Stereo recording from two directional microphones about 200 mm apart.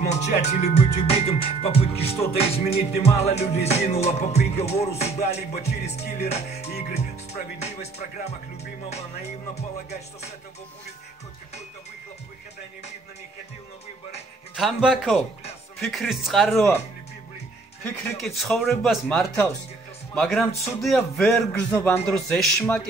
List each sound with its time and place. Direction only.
0.5 s music: 35° left (ahead or behind)
14.5 s a man's voice: centre (ahead or behind)
16.5 s speech: 10° left (ahead or behind)
18.2 s a man's voice: centre (ahead or behind)